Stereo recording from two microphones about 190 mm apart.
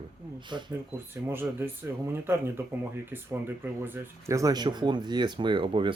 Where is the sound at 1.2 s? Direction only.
10° right (ahead or behind).